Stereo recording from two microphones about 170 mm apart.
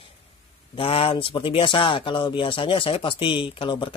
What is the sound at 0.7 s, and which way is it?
Speech, 35° left (ahead or behind).